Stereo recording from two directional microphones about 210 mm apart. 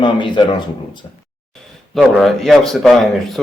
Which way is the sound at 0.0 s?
20° left (ahead or behind).